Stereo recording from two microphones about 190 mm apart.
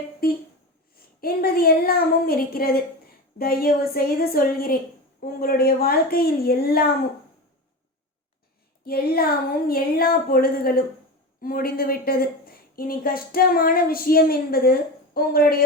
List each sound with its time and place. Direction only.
1.2 s a woman's voice: 55° left (ahead or behind)
8.8 s a woman's voice: 55° left (ahead or behind)